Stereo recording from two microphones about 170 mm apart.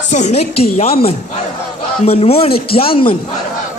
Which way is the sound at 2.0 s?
35° left (ahead or behind).